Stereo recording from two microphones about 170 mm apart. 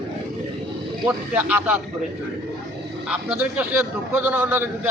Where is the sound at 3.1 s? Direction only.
10° right (ahead or behind).